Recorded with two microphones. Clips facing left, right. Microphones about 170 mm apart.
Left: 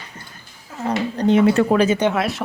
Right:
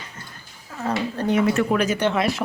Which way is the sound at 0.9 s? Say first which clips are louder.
Left 4 dB; 20° left (ahead or behind).